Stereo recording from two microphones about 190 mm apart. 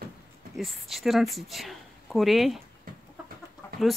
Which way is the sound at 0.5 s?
Centre (ahead or behind).